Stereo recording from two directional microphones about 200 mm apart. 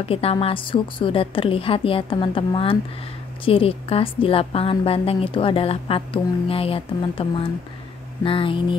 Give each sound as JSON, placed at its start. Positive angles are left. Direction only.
{"t": 0.0, "sound": "a woman's voice", "side_deg": 30}